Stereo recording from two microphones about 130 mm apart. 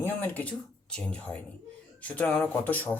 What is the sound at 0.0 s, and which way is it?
A man's voice, 15° left (ahead or behind).